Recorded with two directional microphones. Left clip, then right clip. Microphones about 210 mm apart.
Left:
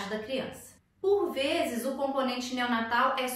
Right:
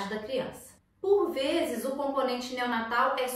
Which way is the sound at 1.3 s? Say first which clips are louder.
Even; 15° left (ahead or behind).